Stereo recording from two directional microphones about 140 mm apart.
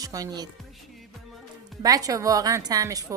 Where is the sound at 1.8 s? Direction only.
25° right (ahead or behind).